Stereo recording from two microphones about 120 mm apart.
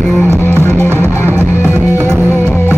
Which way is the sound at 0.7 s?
20° right (ahead or behind).